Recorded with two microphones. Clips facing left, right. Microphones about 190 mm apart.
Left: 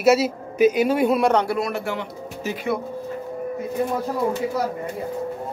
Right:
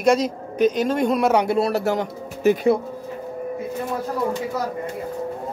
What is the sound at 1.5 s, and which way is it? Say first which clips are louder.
Speech: right 4 dB; 35° right (ahead or behind).